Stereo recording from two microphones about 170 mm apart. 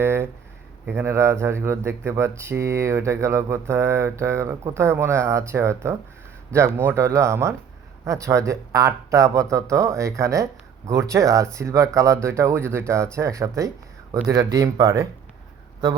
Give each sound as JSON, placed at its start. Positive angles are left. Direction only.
{"t": 0.0, "sound": "speech", "side_deg": -15}